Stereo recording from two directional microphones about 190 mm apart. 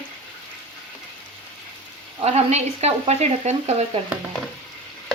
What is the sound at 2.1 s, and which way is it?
Frying, 35° right (ahead or behind).